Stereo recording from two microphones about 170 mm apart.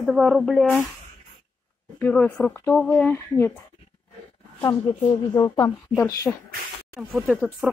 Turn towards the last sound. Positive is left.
turn(degrees=-10)  # may be behind; listen again after turning